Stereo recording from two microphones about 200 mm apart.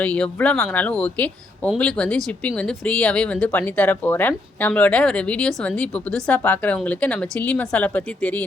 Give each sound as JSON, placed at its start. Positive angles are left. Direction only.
{"t": 0.0, "sound": "speech", "side_deg": 5}